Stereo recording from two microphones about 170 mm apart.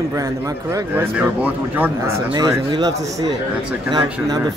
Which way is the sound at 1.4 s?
10° right (ahead or behind).